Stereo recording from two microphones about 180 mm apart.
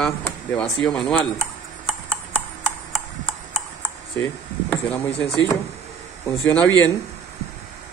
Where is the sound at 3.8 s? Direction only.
15° left (ahead or behind).